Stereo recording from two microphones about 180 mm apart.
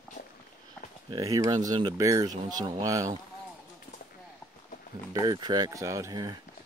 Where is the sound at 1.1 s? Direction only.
20° right (ahead or behind).